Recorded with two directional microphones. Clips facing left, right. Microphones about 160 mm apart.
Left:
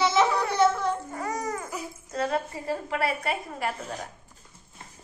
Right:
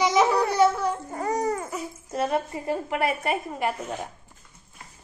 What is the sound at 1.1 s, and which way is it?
Babbling, 35° right (ahead or behind).